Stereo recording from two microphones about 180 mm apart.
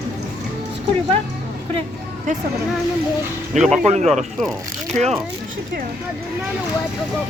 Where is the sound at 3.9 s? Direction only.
40° right (ahead or behind).